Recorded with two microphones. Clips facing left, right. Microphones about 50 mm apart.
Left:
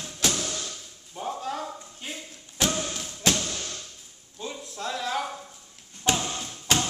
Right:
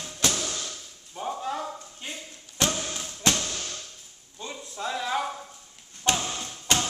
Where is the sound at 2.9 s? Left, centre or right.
Centre.